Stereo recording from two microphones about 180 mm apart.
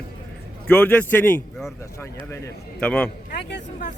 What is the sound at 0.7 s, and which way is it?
Speech, 10° left (ahead or behind).